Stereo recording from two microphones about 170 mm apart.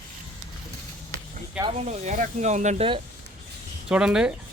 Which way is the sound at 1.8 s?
40° right (ahead or behind).